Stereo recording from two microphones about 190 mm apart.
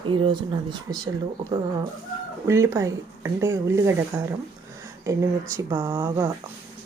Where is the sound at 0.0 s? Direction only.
25° right (ahead or behind).